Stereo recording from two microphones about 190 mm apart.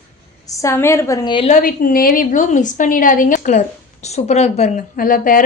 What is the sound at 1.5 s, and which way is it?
A woman's voice, 45° left (ahead or behind).